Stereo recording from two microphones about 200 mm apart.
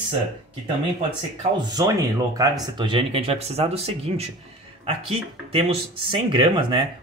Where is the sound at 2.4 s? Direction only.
20° right (ahead or behind).